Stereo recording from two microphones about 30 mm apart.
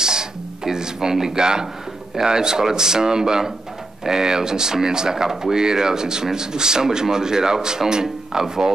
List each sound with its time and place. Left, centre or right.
0.0 s speech: right